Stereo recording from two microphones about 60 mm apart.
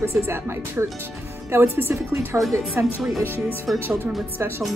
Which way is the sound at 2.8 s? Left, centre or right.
Right.